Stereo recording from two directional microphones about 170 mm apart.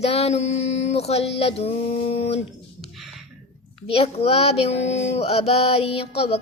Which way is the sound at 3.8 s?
35° left (ahead or behind).